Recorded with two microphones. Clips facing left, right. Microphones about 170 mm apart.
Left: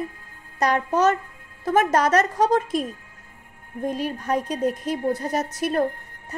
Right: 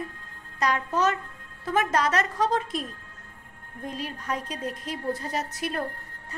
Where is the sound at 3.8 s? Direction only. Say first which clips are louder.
Left 7 dB; 50° left (ahead or behind).